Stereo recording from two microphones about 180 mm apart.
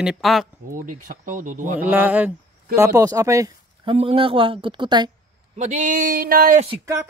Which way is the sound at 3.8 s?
30° right (ahead or behind).